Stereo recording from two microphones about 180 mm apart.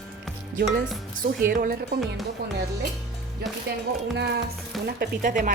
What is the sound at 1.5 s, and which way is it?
Speech, 55° right (ahead or behind).